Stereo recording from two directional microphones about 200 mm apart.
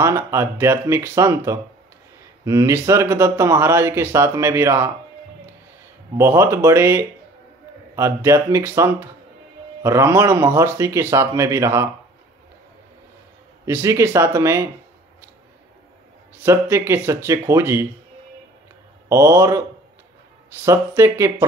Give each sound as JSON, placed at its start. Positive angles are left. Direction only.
{"t": 0.0, "sound": "speech", "side_deg": -15}
{"t": 6.1, "sound": "speech", "side_deg": -15}
{"t": 13.7, "sound": "speech", "side_deg": -15}
{"t": 16.4, "sound": "speech", "side_deg": -10}
{"t": 19.0, "sound": "speech", "side_deg": -15}
{"t": 20.6, "sound": "speech", "side_deg": -15}